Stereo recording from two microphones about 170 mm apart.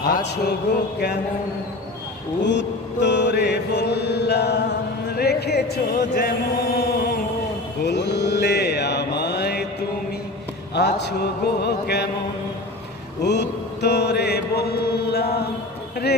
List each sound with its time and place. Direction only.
0.1 s speech: 80° left
2.4 s mantra: 90° left; by 7.2 s 65° left (ahead or behind)
7.8 s mantra: 85° left
10.7 s a man's voice: 80° left
11.6 s music: 75° left (ahead or behind)
13.2 s mantra: 85° left; by 15.5 s 65° left (ahead or behind)